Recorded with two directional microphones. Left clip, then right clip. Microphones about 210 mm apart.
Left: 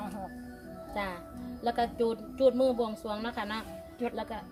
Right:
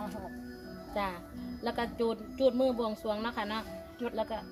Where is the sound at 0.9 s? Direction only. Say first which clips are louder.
Right 1 dB; centre (ahead or behind).